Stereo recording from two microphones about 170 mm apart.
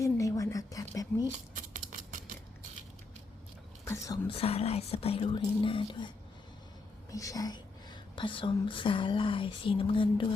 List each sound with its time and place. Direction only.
0.0 s a sound: 20° left (ahead or behind)
1.5 s patter: 50° right (ahead or behind)
3.8 s speech: 20° left (ahead or behind)
4.3 s speech: 35° left (ahead or behind)
7.1 s a woman's voice: 20° left (ahead or behind)